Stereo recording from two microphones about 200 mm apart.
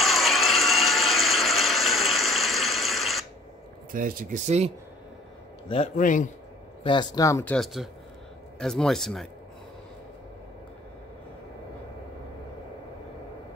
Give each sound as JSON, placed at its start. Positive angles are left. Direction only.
{"t": 0.0, "sound": "a sound", "side_deg": 0}
{"t": 3.9, "sound": "speech", "side_deg": -45}
{"t": 5.9, "sound": "a man's voice", "side_deg": 40}
{"t": 6.8, "sound": "speech", "side_deg": 25}